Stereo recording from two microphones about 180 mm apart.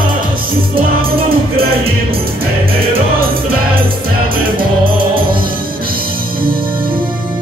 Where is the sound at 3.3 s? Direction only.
55° right (ahead or behind).